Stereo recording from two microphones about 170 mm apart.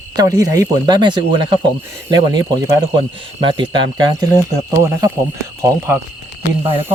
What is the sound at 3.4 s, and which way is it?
Speech, 30° right (ahead or behind).